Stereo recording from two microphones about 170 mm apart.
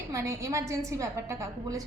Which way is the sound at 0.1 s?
20° right (ahead or behind).